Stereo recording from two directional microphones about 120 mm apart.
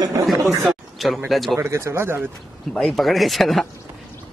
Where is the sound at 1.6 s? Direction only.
20° right (ahead or behind).